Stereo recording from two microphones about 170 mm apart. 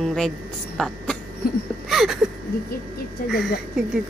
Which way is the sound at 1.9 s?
Centre (ahead or behind).